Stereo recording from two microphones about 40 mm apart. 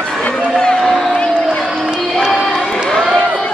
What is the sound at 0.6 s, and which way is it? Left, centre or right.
Crowd, centre.